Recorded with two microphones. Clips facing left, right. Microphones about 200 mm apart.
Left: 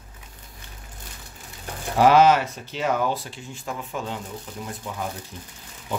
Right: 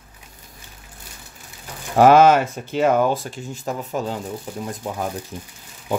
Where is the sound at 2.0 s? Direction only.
50° right (ahead or behind).